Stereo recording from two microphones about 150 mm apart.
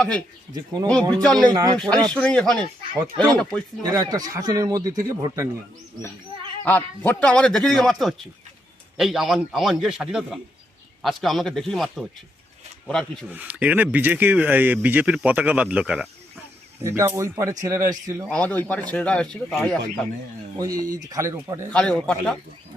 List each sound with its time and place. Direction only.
0.9 s a man's voice: 5° left (ahead or behind)
1.5 s speech: 25° right (ahead or behind)
1.7 s a man's voice: 5° left (ahead or behind)
3.8 s speech: 25° right (ahead or behind)
6.7 s a man's voice: 10° left (ahead or behind)
13.3 s speech: 10° right (ahead or behind)
16.8 s speech: 20° right (ahead or behind)
18.3 s a man's voice: 10° left (ahead or behind)
20.9 s speech: 25° right (ahead or behind)
21.7 s a man's voice: 5° left (ahead or behind)